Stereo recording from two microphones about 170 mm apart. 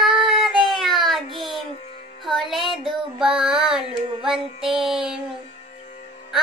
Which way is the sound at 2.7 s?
Centre (ahead or behind).